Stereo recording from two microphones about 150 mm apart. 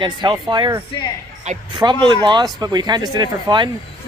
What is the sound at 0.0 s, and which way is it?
Speech, 30° right (ahead or behind).